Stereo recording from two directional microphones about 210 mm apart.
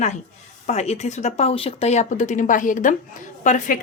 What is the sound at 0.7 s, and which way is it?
Speech, 30° left (ahead or behind).